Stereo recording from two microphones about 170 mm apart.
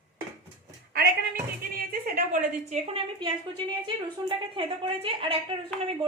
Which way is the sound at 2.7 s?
35° right (ahead or behind).